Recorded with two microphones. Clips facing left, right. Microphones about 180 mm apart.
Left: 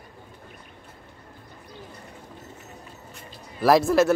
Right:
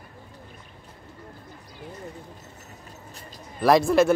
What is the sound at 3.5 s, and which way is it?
Speech, centre (ahead or behind).